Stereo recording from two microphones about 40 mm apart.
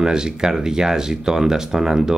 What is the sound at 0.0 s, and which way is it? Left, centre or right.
Speech, centre.